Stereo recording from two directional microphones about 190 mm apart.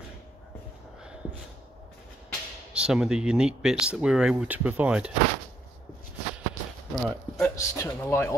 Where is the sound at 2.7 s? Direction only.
5° right (ahead or behind).